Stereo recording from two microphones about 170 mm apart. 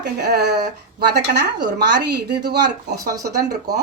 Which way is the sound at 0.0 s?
75° right (ahead or behind).